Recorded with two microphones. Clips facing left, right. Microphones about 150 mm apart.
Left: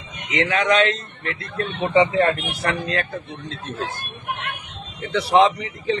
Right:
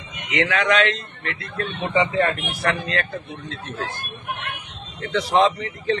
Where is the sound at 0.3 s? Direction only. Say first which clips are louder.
Left 1 dB; 25° left (ahead or behind).